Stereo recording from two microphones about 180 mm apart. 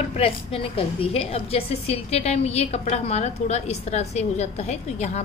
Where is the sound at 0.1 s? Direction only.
30° left (ahead or behind).